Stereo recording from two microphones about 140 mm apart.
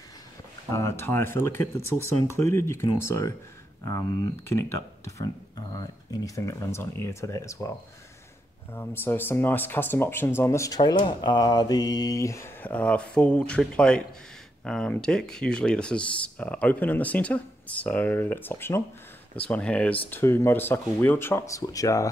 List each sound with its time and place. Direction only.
0.7 s speech: 20° left (ahead or behind)
8.7 s speech: 15° left (ahead or behind)
12.6 s speech: 10° left (ahead or behind)